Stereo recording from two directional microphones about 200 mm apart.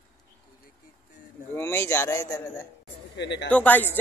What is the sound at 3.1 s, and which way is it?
Speech, 60° left (ahead or behind).